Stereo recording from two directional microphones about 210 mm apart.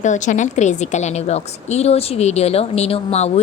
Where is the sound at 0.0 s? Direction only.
35° left (ahead or behind).